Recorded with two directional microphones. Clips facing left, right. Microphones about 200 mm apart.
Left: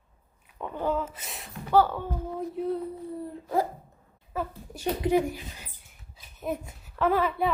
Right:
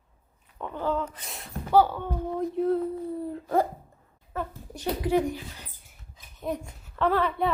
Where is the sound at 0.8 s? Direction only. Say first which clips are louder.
Even; 10° left (ahead or behind).